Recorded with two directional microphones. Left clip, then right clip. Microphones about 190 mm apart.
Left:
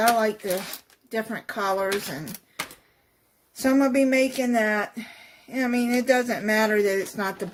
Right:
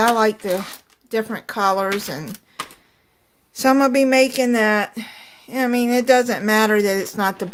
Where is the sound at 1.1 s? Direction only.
50° right (ahead or behind).